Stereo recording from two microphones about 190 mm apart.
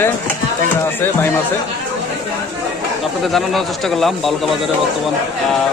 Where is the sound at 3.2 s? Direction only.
Centre (ahead or behind).